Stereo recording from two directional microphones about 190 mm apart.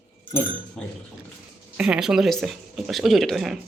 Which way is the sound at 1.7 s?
5° right (ahead or behind).